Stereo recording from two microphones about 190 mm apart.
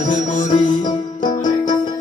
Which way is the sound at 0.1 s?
40° left (ahead or behind).